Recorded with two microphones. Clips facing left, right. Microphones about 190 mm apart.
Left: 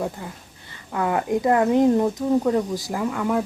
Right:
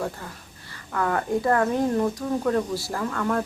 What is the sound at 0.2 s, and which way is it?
Speech, 15° left (ahead or behind).